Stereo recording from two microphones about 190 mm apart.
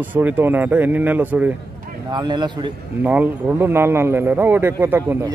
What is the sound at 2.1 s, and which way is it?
Speech, 25° right (ahead or behind).